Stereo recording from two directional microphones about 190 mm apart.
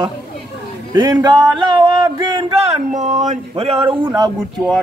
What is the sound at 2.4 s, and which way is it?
Speech, 35° right (ahead or behind).